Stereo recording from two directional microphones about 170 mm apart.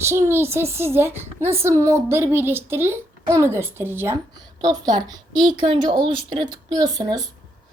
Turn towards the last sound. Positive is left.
turn(degrees=-20)  # may be behind; listen again after turning